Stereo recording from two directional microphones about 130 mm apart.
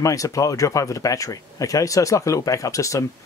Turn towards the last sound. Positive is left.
turn(degrees=25)  # may be behind; listen again after turning